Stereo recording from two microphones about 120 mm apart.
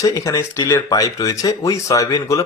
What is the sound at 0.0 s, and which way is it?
Speech, 30° left (ahead or behind).